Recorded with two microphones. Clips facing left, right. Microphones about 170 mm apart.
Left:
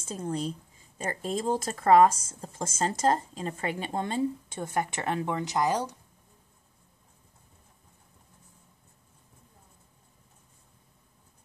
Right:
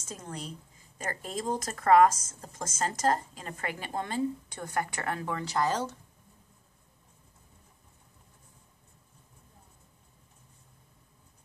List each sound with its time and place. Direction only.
0.1 s speech: 30° left (ahead or behind)